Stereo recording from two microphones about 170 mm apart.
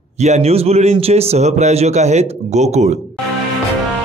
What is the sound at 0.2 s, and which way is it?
A man's voice, 40° right (ahead or behind).